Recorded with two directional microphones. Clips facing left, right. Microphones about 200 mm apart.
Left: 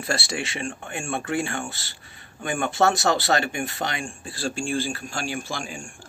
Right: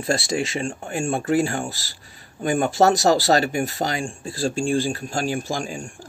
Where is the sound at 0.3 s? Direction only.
35° right (ahead or behind).